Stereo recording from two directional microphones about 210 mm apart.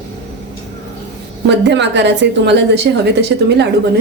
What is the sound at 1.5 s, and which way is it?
A woman's voice, 55° right (ahead or behind).